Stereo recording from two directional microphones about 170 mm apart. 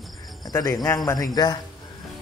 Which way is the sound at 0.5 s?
20° left (ahead or behind).